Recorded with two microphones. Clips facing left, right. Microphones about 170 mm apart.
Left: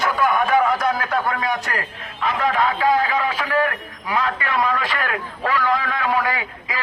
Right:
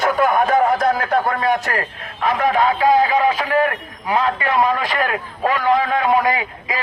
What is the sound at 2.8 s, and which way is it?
A man's voice, 20° right (ahead or behind).